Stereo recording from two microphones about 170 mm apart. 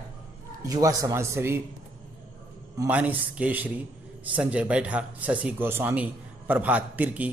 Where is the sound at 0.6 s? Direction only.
20° right (ahead or behind).